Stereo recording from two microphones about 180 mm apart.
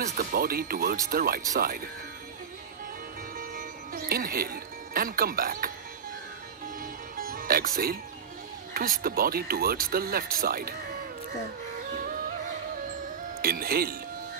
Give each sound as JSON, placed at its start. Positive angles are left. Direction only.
{"t": 0.1, "sound": "speech", "side_deg": -55}
{"t": 3.3, "sound": "music", "side_deg": -50}
{"t": 6.8, "sound": "music", "side_deg": -50}
{"t": 8.7, "sound": "speech", "side_deg": -50}
{"t": 13.4, "sound": "speech", "side_deg": -55}